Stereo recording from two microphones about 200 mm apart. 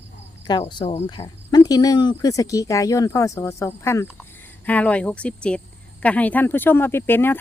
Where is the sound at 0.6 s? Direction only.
25° left (ahead or behind).